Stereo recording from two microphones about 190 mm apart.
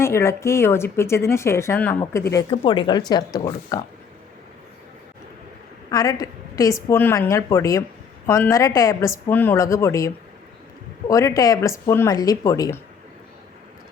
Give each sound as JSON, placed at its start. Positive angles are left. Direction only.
{"t": 0.0, "sound": "speech", "side_deg": 15}
{"t": 2.5, "sound": "speech", "side_deg": 25}
{"t": 5.9, "sound": "a woman's voice", "side_deg": 20}
{"t": 11.1, "sound": "speech", "side_deg": 15}